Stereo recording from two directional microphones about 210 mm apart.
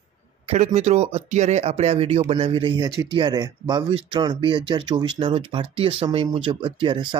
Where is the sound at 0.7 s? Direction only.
30° right (ahead or behind).